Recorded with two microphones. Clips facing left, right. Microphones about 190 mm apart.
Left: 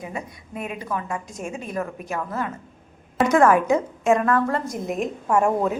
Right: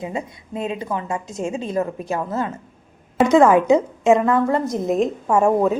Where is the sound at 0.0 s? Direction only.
25° right (ahead or behind).